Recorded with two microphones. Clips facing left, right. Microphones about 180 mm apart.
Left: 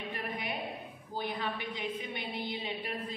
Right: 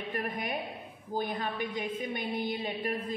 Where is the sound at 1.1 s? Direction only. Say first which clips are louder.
Right 3 dB; 45° right (ahead or behind).